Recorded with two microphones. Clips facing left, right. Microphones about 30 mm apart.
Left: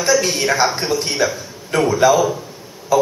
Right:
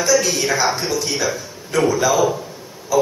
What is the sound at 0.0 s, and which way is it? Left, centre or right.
Speech, left.